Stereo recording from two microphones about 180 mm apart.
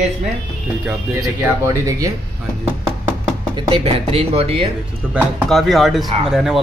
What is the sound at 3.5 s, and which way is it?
Speech, 30° right (ahead or behind).